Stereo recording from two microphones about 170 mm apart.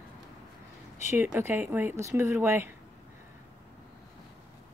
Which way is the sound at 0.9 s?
15° right (ahead or behind).